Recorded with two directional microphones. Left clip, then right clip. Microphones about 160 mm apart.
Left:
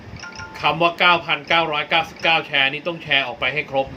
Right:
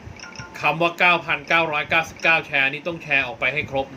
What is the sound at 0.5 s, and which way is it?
Speech, 25° right (ahead or behind).